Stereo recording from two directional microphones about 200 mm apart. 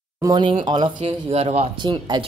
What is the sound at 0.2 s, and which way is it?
Speech, 20° right (ahead or behind).